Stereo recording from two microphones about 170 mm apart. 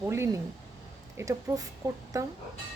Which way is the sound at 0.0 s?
15° right (ahead or behind).